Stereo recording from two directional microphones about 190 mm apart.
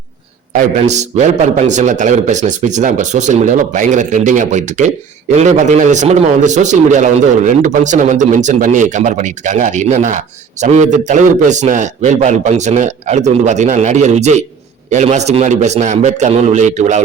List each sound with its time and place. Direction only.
0.5 s a man's voice: 35° right (ahead or behind)